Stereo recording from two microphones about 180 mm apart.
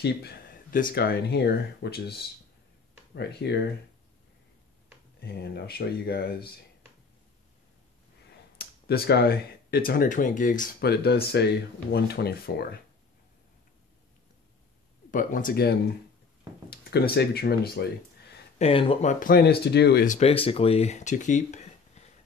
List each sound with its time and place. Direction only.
0.0 s speech: 60° left (ahead or behind)
5.2 s speech: 65° left (ahead or behind)
8.5 s speech: 60° left (ahead or behind)
10.8 s speech: 65° left (ahead or behind)
15.0 s speech: 50° left (ahead or behind)
18.6 s speech: 30° left (ahead or behind); by 20.1 s 65° left (ahead or behind)
20.1 s speech: 35° left (ahead or behind)